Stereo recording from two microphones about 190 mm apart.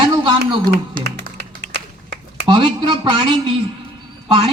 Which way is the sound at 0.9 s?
60° right (ahead or behind).